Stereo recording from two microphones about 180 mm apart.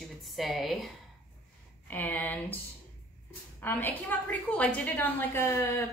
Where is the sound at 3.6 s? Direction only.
10° left (ahead or behind).